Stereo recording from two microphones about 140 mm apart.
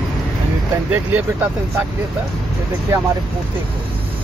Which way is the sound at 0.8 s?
10° right (ahead or behind).